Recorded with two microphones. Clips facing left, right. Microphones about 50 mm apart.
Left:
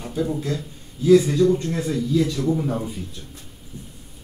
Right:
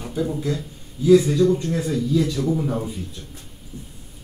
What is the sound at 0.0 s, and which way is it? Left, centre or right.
Speech, centre.